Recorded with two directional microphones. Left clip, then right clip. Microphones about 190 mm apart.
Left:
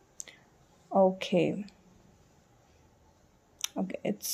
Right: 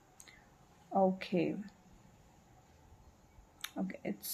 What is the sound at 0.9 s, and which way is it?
Speech, 30° left (ahead or behind).